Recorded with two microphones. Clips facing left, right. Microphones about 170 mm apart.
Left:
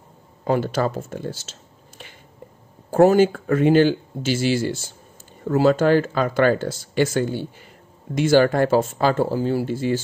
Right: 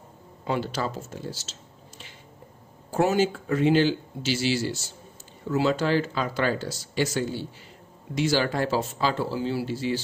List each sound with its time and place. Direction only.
0.5 s speech: 50° left (ahead or behind)